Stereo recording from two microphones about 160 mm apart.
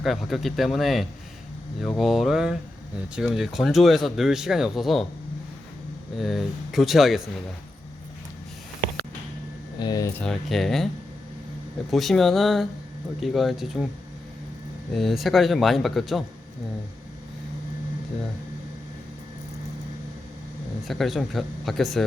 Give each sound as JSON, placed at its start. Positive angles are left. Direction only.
{"t": 0.0, "sound": "speech", "side_deg": 0}
{"t": 6.1, "sound": "speech", "side_deg": 0}
{"t": 9.7, "sound": "speech", "side_deg": 25}
{"t": 10.2, "sound": "speech", "side_deg": 0}
{"t": 11.9, "sound": "speech", "side_deg": 0}
{"t": 14.9, "sound": "speech", "side_deg": 0}
{"t": 20.8, "sound": "speech", "side_deg": 0}